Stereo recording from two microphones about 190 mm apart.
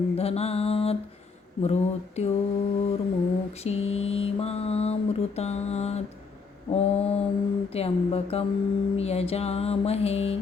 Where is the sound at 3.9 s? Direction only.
30° left (ahead or behind).